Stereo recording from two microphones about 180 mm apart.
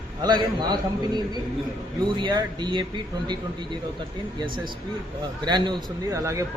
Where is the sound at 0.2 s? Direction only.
25° right (ahead or behind).